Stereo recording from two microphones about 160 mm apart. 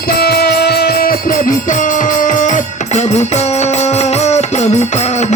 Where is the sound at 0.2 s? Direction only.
80° left.